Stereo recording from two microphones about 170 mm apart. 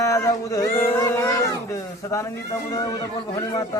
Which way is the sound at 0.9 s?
15° left (ahead or behind).